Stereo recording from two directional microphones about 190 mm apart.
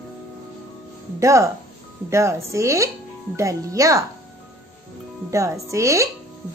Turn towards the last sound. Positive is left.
turn(degrees=-15)  # may be behind; listen again after turning